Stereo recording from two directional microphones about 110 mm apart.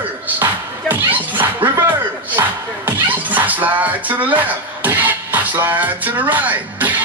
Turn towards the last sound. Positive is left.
turn(degrees=-15)  # may be behind; listen again after turning